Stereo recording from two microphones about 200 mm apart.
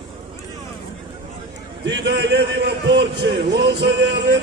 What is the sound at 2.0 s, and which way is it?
A man's voice, 55° right (ahead or behind).